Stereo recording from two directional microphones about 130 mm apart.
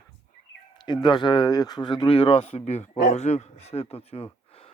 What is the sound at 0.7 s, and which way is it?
Speech, 35° left (ahead or behind).